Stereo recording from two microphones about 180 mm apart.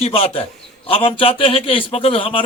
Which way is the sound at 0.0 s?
35° left (ahead or behind).